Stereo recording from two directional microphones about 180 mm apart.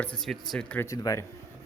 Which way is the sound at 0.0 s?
5° left (ahead or behind).